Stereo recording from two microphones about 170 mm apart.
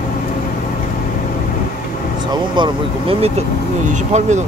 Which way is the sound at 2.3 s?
30° right (ahead or behind).